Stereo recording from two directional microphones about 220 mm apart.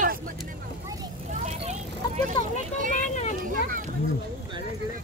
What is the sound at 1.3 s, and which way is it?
Vehicle, 30° right (ahead or behind).